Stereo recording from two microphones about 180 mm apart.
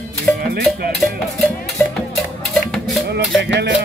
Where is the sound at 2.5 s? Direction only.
Centre (ahead or behind).